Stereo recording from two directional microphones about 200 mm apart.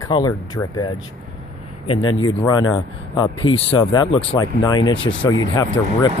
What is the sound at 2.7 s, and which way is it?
Speech, 20° left (ahead or behind).